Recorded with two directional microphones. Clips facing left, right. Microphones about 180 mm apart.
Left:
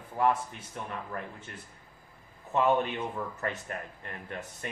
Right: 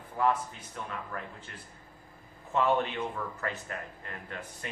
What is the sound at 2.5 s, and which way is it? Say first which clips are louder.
Speech: left 1 dB; 15° left (ahead or behind).